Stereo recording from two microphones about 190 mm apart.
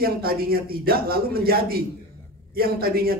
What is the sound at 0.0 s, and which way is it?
A man's voice, 50° right (ahead or behind).